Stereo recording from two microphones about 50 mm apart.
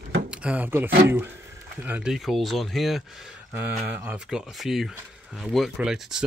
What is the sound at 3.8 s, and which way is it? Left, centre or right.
Speech, right.